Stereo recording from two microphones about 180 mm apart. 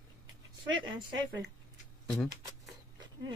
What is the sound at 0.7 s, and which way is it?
Speech, 25° right (ahead or behind).